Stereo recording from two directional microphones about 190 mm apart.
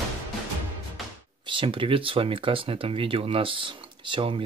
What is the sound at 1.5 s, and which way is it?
Speech, 25° right (ahead or behind).